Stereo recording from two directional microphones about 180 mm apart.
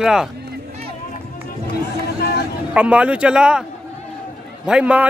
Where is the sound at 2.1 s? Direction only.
65° left (ahead or behind).